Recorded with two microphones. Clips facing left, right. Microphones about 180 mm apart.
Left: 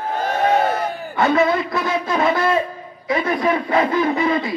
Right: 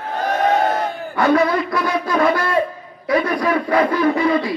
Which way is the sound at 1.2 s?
25° left (ahead or behind).